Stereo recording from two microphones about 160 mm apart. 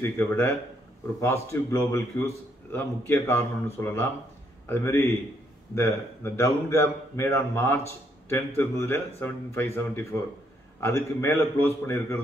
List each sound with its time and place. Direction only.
0.0 s a man's voice: 15° left (ahead or behind)